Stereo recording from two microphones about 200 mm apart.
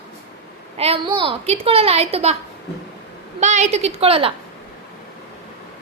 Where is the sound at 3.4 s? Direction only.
35° right (ahead or behind).